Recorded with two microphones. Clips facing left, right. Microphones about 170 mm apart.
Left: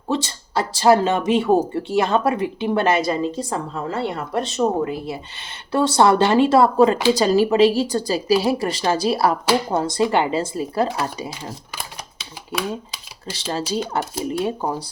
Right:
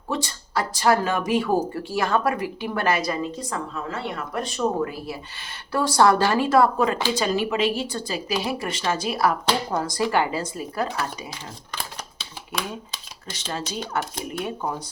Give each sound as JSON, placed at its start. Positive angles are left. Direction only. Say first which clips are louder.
{"t": 0.1, "sound": "speech", "louder": "left 4 dB", "side_deg": 25}
{"t": 12.5, "sound": "speech", "louder": "left 5 dB", "side_deg": 5}
{"t": 13.3, "sound": "speech", "louder": "left 7 dB", "side_deg": 30}